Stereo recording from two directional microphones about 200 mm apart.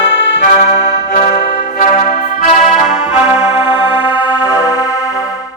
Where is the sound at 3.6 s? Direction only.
25° left (ahead or behind).